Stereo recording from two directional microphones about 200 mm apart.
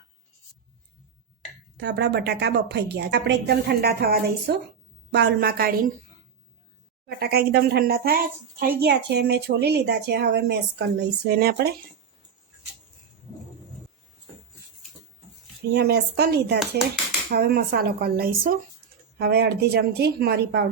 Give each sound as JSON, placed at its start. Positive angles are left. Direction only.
{"t": 1.8, "sound": "a woman's voice", "side_deg": -60}
{"t": 7.2, "sound": "a woman's voice", "side_deg": -50}
{"t": 15.7, "sound": "a woman's voice", "side_deg": -55}
{"t": 16.6, "sound": "speech", "side_deg": 0}
{"t": 17.3, "sound": "speech", "side_deg": -50}